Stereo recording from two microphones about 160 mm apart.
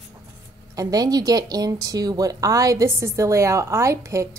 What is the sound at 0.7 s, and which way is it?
A woman's voice, 20° right (ahead or behind).